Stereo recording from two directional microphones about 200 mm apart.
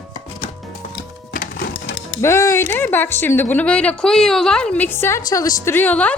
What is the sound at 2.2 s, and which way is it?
A woman's voice, 15° left (ahead or behind).